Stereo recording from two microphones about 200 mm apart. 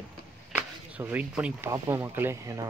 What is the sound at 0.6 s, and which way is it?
Speech, 10° right (ahead or behind).